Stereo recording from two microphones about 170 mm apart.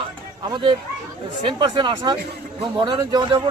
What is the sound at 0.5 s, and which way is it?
Speech, 25° right (ahead or behind).